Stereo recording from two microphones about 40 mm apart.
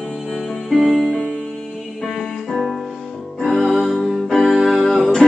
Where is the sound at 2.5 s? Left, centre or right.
Centre.